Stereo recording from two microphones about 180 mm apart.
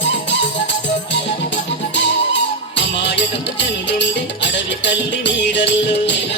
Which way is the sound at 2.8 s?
75° left (ahead or behind).